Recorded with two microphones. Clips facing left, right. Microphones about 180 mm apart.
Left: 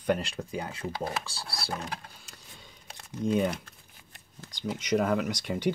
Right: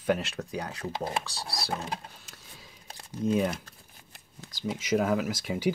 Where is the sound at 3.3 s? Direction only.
Centre (ahead or behind).